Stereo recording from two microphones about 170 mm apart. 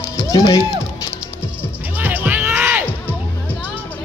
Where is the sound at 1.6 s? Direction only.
10° right (ahead or behind).